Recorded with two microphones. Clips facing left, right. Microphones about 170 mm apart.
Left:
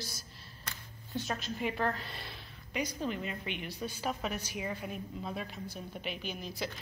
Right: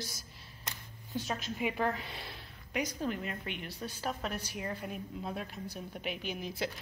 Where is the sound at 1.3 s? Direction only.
5° right (ahead or behind).